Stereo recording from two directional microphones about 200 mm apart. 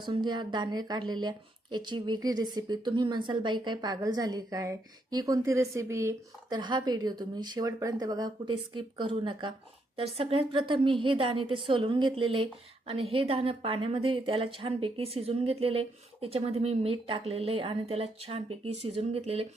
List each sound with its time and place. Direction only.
0.0 s speech: 20° right (ahead or behind)